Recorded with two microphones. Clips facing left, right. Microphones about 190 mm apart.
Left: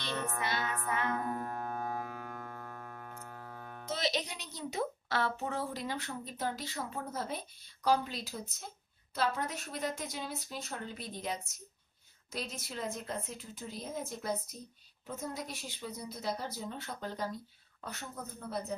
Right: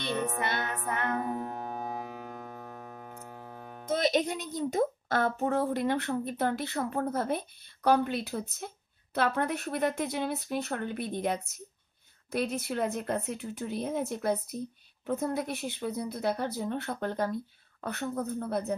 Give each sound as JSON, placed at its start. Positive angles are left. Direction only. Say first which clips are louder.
{"t": 0.1, "sound": "music", "louder": "right 6 dB", "side_deg": -20}
{"t": 0.4, "sound": "a woman's voice", "louder": "right 3 dB", "side_deg": -55}
{"t": 1.2, "sound": "music", "louder": "right 3 dB", "side_deg": -20}
{"t": 3.9, "sound": "a woman's voice", "louder": "right 8 dB", "side_deg": -50}